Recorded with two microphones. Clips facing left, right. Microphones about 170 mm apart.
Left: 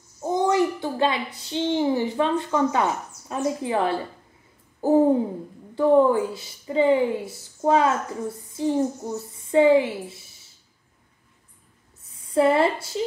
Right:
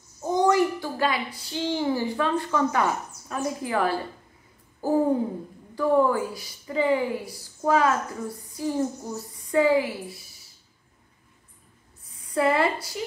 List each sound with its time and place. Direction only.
0.2 s a child's voice: 20° left (ahead or behind)
12.0 s speech: 25° left (ahead or behind)